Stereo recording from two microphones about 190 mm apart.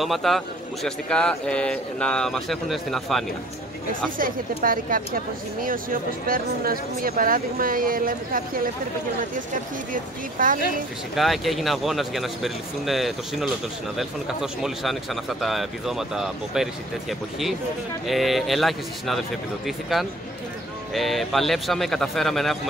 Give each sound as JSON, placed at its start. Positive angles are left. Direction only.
{"t": 0.0, "sound": "speech", "side_deg": 0}
{"t": 4.6, "sound": "speech", "side_deg": -50}
{"t": 10.4, "sound": "speech", "side_deg": -45}
{"t": 11.1, "sound": "speech", "side_deg": 0}
{"t": 18.0, "sound": "speech", "side_deg": 0}